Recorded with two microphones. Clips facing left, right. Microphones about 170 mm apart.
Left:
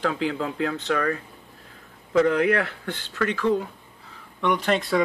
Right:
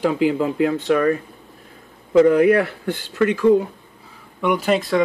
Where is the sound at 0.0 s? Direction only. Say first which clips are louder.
Right 7 dB; 10° right (ahead or behind).